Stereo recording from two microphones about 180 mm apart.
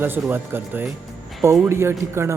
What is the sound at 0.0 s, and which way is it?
Speech, 10° right (ahead or behind).